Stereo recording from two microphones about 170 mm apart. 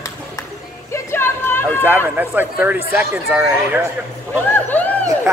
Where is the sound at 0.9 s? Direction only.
15° left (ahead or behind).